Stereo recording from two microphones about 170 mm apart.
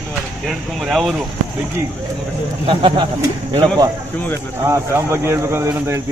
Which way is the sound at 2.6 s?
30° right (ahead or behind).